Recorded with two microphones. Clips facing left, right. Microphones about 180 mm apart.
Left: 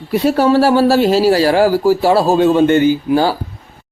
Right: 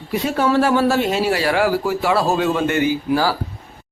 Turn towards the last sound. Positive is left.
turn(degrees=30)  # may be behind; listen again after turning